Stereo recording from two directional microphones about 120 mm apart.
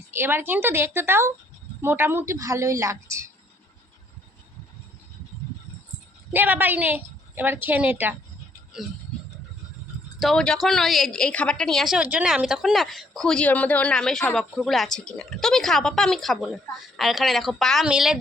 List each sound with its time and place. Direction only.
0.1 s a woman's voice: 20° right (ahead or behind)
6.3 s a woman's voice: 15° right (ahead or behind)
10.2 s a woman's voice: 5° left (ahead or behind)